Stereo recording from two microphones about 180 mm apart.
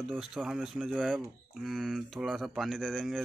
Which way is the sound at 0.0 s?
Centre (ahead or behind).